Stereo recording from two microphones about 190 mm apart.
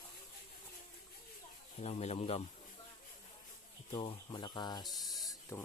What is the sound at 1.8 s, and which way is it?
Speech, 35° left (ahead or behind).